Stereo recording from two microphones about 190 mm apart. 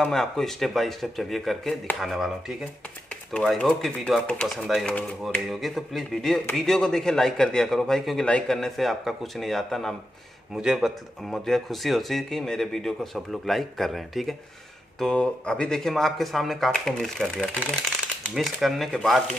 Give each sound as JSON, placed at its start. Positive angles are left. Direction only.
{"t": 0.0, "sound": "speech", "side_deg": 0}